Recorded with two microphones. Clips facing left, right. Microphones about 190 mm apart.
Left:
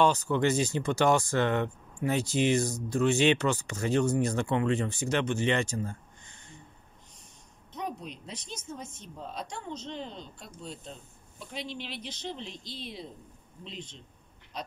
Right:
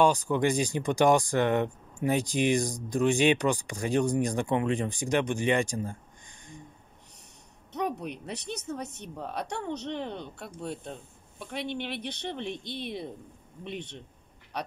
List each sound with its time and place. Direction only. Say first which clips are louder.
0.0 s speech: right 1 dB; 15° right (ahead or behind)
7.7 s a woman's voice: right 6 dB; 65° right (ahead or behind)